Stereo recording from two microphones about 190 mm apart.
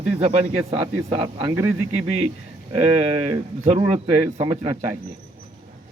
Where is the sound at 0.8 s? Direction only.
20° right (ahead or behind).